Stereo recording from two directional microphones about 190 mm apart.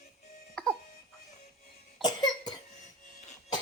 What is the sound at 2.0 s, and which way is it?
Cough, 20° left (ahead or behind).